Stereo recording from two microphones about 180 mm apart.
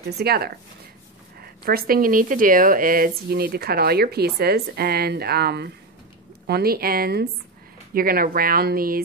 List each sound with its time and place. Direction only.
0.2 s speech: 60° right (ahead or behind)